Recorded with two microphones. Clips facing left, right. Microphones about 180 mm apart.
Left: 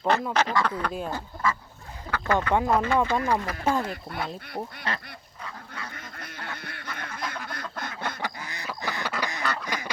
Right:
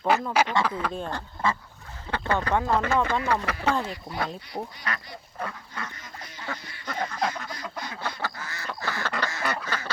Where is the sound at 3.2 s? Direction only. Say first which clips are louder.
Even; 75° right (ahead or behind).